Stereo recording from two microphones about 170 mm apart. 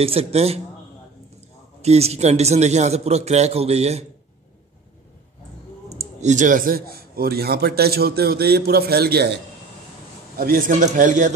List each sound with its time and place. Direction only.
0.0 s a man's voice: 35° right (ahead or behind)
1.8 s a man's voice: 40° right (ahead or behind)
5.9 s a man's voice: 40° right (ahead or behind); by 9.4 s 70° right (ahead or behind)
10.3 s a man's voice: 60° right (ahead or behind)